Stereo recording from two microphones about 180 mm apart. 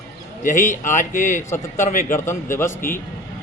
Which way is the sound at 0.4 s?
45° left (ahead or behind).